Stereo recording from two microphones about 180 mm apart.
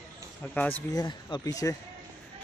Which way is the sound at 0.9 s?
20° left (ahead or behind).